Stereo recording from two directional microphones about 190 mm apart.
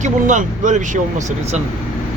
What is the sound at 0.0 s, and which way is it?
Speech, 40° right (ahead or behind).